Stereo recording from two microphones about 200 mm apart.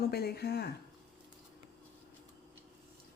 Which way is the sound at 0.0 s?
50° left (ahead or behind).